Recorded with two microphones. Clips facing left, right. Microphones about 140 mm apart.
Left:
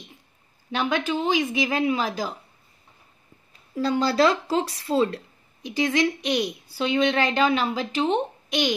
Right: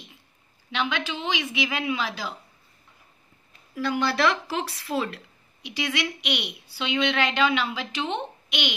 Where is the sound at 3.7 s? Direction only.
30° left (ahead or behind).